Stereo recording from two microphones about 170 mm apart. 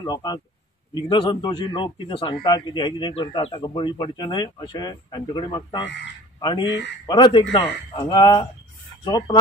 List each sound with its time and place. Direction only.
0.0 s speech: 25° left (ahead or behind)